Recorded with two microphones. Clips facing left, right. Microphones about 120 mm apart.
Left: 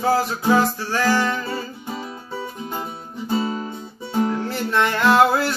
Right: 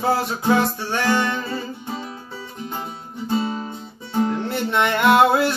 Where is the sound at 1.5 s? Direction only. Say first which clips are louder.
Even; 10° left (ahead or behind).